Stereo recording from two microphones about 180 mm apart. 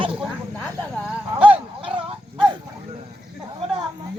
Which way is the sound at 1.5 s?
30° right (ahead or behind).